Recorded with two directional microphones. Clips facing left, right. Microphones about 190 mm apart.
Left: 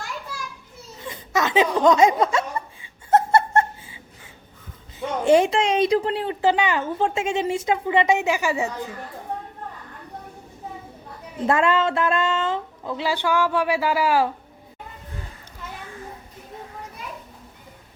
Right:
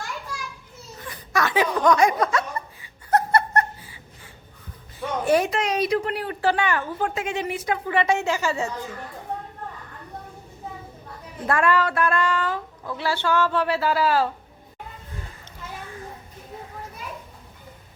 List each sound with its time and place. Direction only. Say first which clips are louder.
1.0 s laughter: left 1 dB; 25° left (ahead or behind)
2.8 s a sound: left 3 dB; 25° left (ahead or behind)
4.9 s speech: left 4 dB; 25° left (ahead or behind)
11.4 s speech: left 2 dB; 20° left (ahead or behind)